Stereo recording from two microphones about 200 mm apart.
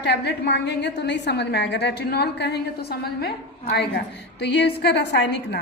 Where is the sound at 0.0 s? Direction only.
55° left (ahead or behind).